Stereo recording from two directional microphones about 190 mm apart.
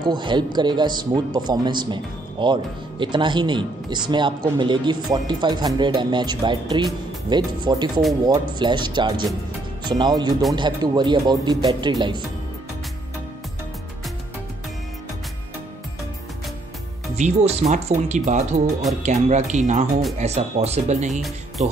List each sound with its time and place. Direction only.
0.0 s speech: 25° right (ahead or behind)
17.1 s speech: 35° right (ahead or behind)